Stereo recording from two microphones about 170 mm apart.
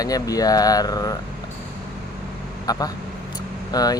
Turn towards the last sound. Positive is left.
turn(degrees=20)  # may be behind; listen again after turning